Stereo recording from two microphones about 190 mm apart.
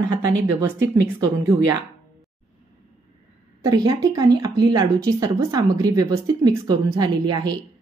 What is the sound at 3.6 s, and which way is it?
Speech, 20° right (ahead or behind).